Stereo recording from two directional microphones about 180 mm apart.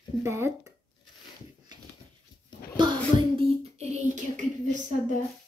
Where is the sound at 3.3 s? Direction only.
35° right (ahead or behind).